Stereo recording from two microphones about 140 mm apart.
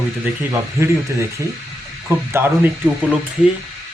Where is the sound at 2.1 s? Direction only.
15° right (ahead or behind).